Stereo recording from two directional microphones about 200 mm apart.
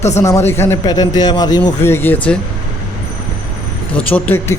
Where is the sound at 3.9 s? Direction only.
5° left (ahead or behind).